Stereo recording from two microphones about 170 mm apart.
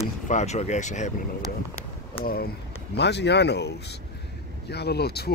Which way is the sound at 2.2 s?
65° left (ahead or behind).